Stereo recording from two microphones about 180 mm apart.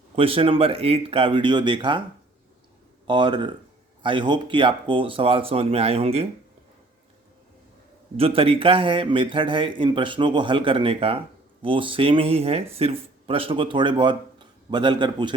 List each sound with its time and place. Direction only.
0.2 s speech: 30° right (ahead or behind)
3.1 s speech: 25° right (ahead or behind)
8.1 s speech: 30° right (ahead or behind)